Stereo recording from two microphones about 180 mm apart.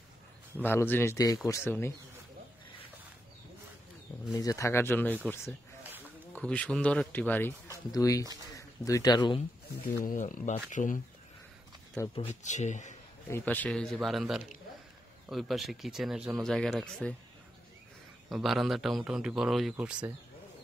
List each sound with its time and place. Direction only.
0.7 s a man's voice: 10° left (ahead or behind)
4.3 s a man's voice: 20° left (ahead or behind)
9.8 s speech: 50° left (ahead or behind)
12.0 s a man's voice: 15° left (ahead or behind)
12.4 s speech: 40° left (ahead or behind)
13.3 s speech: 10° left (ahead or behind)
18.3 s speech: centre (ahead or behind)